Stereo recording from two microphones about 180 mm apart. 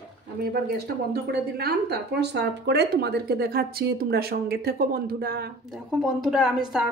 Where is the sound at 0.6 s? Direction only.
60° right (ahead or behind).